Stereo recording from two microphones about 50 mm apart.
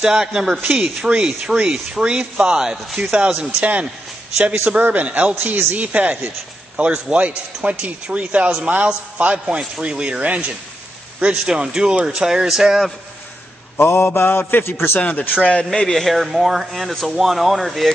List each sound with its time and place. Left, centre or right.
0.0 s speech: centre; by 5.3 s right
5.4 s speech: right
5.8 s speech: right
11.4 s speech: centre
13.7 s mantra: left
14.6 s a man's voice: left
15.0 s a man's voice: left
15.9 s speech: centre